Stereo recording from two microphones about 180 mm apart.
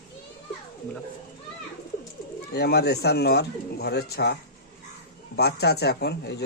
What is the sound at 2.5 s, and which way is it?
Speech, 65° left (ahead or behind).